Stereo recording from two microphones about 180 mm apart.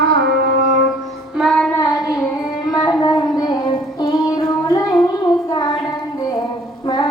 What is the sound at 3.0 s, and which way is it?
Child singing, 20° left (ahead or behind).